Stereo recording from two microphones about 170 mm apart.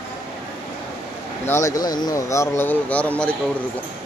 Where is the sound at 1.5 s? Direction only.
15° left (ahead or behind).